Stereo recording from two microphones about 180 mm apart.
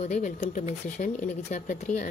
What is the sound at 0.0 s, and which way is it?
Speech, 35° left (ahead or behind).